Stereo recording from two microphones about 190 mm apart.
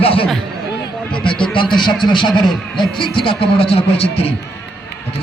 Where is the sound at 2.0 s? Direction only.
25° left (ahead or behind).